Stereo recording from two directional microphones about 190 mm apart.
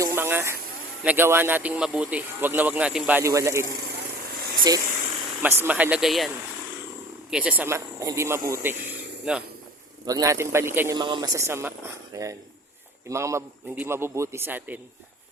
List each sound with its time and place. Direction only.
0.0 s a sound: 15° right (ahead or behind)
1.0 s speech: 10° right (ahead or behind)
9.3 s speech: 5° right (ahead or behind)
10.1 s speech: 15° right (ahead or behind)